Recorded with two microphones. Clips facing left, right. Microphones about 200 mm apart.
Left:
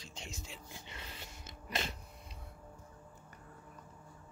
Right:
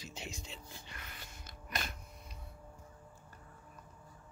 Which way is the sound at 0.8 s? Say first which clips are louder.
Left 2 dB; 25° left (ahead or behind).